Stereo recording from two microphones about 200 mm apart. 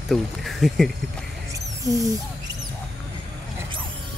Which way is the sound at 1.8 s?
15° right (ahead or behind).